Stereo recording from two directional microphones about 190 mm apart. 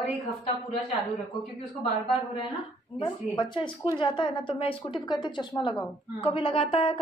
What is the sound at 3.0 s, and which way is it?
A woman's voice, 25° left (ahead or behind).